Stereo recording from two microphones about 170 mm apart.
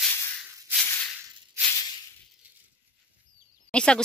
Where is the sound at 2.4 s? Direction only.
10° right (ahead or behind).